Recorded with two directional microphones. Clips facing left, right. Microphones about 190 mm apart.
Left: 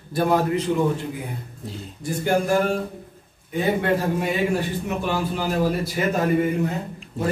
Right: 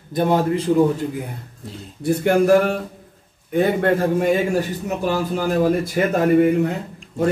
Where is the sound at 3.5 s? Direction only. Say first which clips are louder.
Right 4 dB; 55° right (ahead or behind).